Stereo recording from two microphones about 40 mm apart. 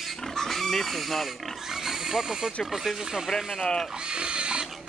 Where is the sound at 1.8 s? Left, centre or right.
Centre.